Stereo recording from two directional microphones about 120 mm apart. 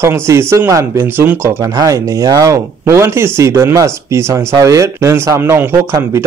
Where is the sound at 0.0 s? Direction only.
20° right (ahead or behind).